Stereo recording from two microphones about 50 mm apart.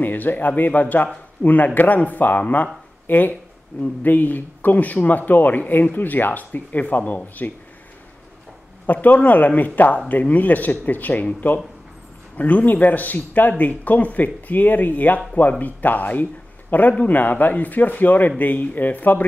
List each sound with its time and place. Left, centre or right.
0.0 s speech: left
8.8 s speech: left